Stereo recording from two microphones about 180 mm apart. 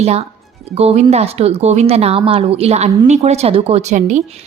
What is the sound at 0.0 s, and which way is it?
A woman's voice, 35° right (ahead or behind).